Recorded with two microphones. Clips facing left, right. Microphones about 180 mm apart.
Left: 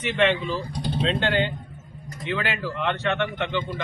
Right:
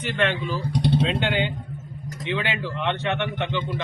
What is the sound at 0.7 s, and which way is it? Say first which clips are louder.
Speech: right 6 dB; 85° right.